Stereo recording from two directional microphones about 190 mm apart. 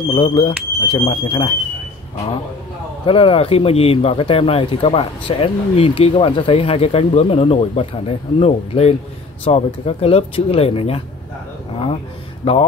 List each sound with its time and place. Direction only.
0.1 s speech: 25° left (ahead or behind)
3.1 s speech: 30° left (ahead or behind)
12.4 s speech: 30° left (ahead or behind)